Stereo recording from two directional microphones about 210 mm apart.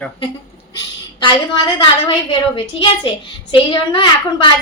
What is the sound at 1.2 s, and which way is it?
A woman's voice, 20° left (ahead or behind).